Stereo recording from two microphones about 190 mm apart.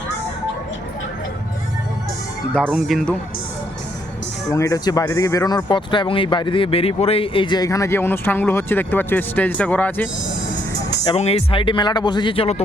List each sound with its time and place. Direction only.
2.6 s speech: centre (ahead or behind)
4.5 s speech: 15° left (ahead or behind)
11.0 s speech: 30° left (ahead or behind)